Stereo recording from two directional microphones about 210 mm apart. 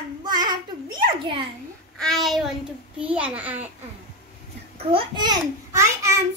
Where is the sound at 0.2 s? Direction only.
20° right (ahead or behind).